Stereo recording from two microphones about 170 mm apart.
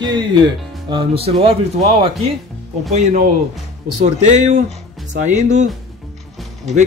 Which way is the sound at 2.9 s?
50° right (ahead or behind).